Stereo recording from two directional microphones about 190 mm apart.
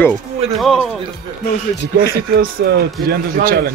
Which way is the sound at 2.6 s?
55° right (ahead or behind).